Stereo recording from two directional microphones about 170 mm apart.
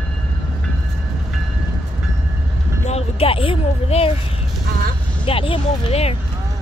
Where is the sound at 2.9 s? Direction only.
35° left (ahead or behind).